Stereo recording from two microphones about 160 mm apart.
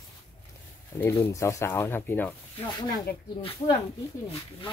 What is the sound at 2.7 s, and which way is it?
Speech, 30° left (ahead or behind).